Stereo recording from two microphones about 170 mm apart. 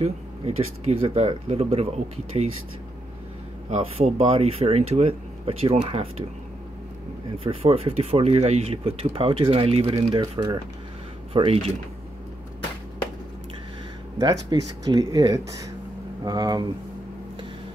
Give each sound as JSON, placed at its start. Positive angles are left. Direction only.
{"t": 0.0, "sound": "speech", "side_deg": -35}
{"t": 3.7, "sound": "speech", "side_deg": -40}
{"t": 7.3, "sound": "speech", "side_deg": -35}
{"t": 14.1, "sound": "speech", "side_deg": -20}